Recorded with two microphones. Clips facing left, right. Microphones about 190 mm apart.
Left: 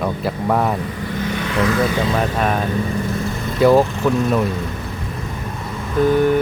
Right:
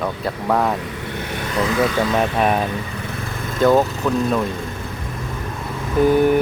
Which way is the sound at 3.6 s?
Centre (ahead or behind).